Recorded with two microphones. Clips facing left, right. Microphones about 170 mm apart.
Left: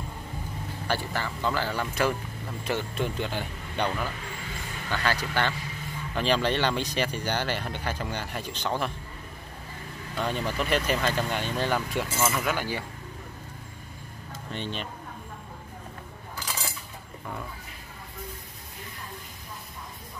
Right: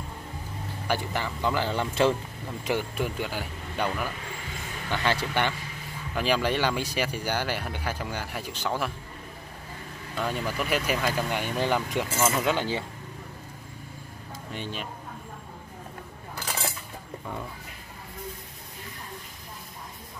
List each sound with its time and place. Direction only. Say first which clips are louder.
0.8 s speech: right 1 dB; 15° right (ahead or behind)
2.6 s speech: right 1 dB; 15° right (ahead or behind)
4.8 s speech: right 1 dB; 20° right (ahead or behind)
6.1 s speech: even; 10° right (ahead or behind)
10.1 s speech: even; 5° right (ahead or behind); by 12.8 s 20° right (ahead or behind)
14.5 s speech: left 1 dB; 10° right (ahead or behind)